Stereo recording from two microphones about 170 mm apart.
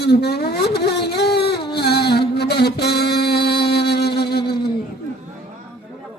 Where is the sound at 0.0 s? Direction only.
70° left (ahead or behind).